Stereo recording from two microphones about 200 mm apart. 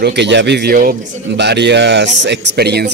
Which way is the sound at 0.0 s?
60° right (ahead or behind).